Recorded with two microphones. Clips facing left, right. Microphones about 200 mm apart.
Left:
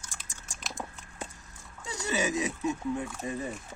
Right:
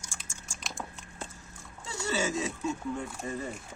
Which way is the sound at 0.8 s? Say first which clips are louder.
Left 2 dB; 15° left (ahead or behind).